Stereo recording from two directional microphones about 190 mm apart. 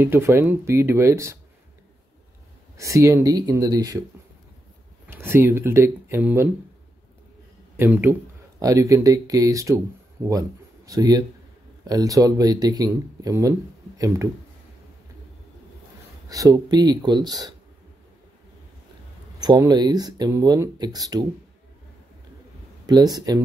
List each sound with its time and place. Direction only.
0.0 s speech: 10° right (ahead or behind)
2.8 s speech: 15° right (ahead or behind)
5.0 s speech: 10° right (ahead or behind)
7.7 s speech: 10° right (ahead or behind)
10.9 s speech: 20° right (ahead or behind)
16.3 s speech: 20° right (ahead or behind)
19.4 s speech: 20° right (ahead or behind)
22.8 s speech: 20° right (ahead or behind)